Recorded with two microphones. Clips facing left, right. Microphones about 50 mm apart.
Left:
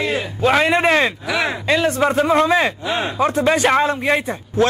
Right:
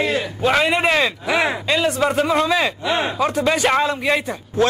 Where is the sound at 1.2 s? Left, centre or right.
Right.